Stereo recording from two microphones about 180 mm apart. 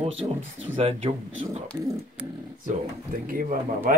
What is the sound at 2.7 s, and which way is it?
Speech, 45° right (ahead or behind).